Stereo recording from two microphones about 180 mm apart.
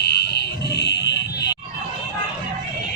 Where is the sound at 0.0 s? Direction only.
65° left (ahead or behind).